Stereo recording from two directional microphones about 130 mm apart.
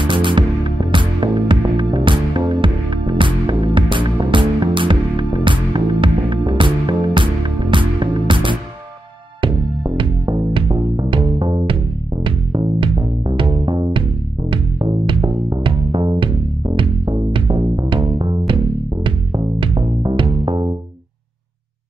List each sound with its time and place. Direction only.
0.0 s music: 40° right (ahead or behind)